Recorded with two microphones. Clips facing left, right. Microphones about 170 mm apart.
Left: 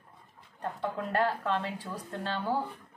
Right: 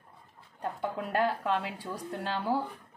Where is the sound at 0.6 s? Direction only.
10° right (ahead or behind).